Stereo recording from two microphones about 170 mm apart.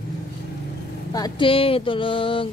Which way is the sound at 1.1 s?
25° left (ahead or behind).